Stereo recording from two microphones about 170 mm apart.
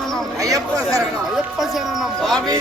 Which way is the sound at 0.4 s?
20° right (ahead or behind).